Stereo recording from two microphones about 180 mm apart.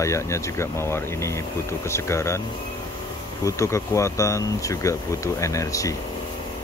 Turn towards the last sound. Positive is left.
turn(degrees=15)  # may be behind; listen again after turning